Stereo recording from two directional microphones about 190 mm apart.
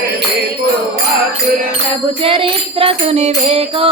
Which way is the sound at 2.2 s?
25° right (ahead or behind).